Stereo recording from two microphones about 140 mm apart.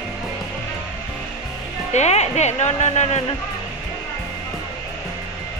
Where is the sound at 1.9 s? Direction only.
55° left (ahead or behind).